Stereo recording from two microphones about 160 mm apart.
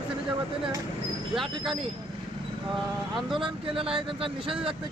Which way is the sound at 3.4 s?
30° right (ahead or behind).